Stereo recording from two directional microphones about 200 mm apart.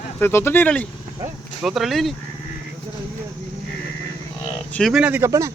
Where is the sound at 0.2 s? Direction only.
10° left (ahead or behind).